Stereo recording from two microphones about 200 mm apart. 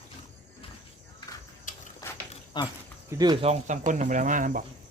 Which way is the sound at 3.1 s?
20° right (ahead or behind).